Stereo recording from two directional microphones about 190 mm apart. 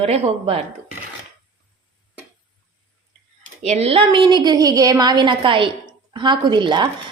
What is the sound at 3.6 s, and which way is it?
A woman's voice, 35° right (ahead or behind).